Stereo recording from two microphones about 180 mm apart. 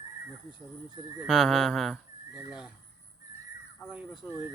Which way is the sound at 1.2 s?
Centre (ahead or behind).